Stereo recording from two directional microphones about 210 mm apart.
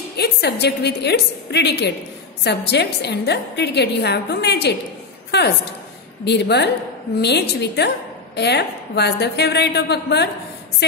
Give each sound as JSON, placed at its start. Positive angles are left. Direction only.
{"t": 0.2, "sound": "a woman's voice", "side_deg": 50}
{"t": 6.2, "sound": "a woman's voice", "side_deg": 55}